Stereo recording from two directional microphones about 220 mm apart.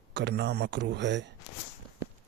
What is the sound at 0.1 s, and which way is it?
Speech, 55° right (ahead or behind).